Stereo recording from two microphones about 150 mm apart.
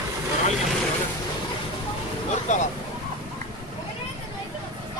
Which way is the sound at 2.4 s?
55° left (ahead or behind).